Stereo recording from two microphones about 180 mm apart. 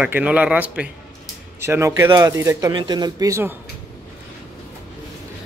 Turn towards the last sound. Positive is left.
turn(degrees=-15)  # may be behind; listen again after turning